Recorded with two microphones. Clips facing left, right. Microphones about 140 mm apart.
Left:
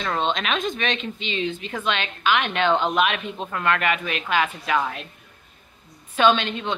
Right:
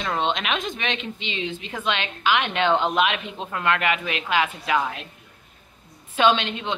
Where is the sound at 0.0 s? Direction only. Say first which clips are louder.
Even; 15° right (ahead or behind).